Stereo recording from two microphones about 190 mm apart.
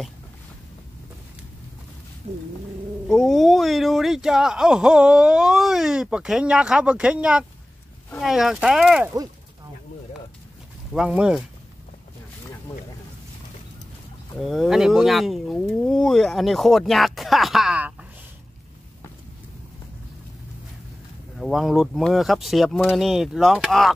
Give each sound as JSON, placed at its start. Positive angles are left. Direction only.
{"t": 2.3, "sound": "bird", "side_deg": -35}
{"t": 3.1, "sound": "speech", "side_deg": 0}
{"t": 10.9, "sound": "speech", "side_deg": -5}
{"t": 14.4, "sound": "speech", "side_deg": 0}
{"t": 21.4, "sound": "speech", "side_deg": 0}